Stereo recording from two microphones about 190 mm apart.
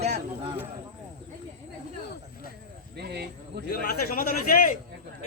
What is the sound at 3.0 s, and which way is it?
Speech, 60° right (ahead or behind).